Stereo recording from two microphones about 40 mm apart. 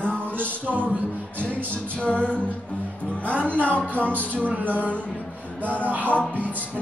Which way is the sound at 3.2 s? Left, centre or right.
Right.